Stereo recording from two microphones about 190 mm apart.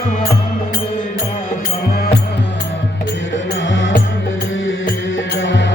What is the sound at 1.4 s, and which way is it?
Music, 50° left (ahead or behind).